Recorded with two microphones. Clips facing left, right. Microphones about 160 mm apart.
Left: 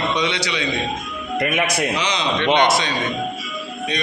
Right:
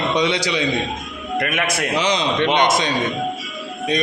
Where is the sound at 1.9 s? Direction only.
45° right (ahead or behind).